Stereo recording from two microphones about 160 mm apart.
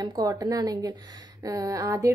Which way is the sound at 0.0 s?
25° right (ahead or behind).